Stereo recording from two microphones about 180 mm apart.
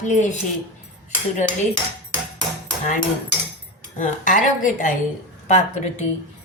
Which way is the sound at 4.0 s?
45° left (ahead or behind).